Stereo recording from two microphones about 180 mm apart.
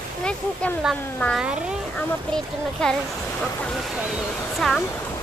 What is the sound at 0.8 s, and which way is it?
Speech, centre (ahead or behind).